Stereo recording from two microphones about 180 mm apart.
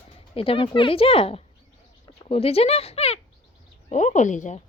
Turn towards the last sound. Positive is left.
turn(degrees=45)  # may be behind; listen again after turning